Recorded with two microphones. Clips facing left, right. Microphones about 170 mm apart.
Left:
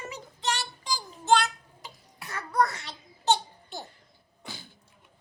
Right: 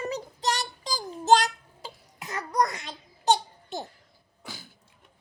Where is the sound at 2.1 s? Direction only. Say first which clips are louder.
Even; 20° right (ahead or behind).